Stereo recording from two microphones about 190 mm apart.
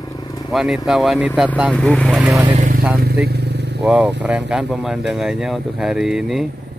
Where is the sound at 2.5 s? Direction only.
45° right (ahead or behind).